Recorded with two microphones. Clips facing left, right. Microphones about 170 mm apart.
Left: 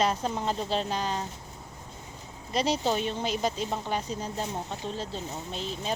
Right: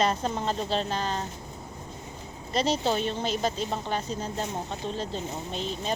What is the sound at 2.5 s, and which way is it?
Speech, 10° left (ahead or behind).